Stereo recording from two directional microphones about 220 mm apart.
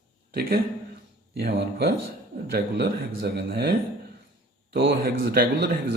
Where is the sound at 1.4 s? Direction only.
50° right (ahead or behind).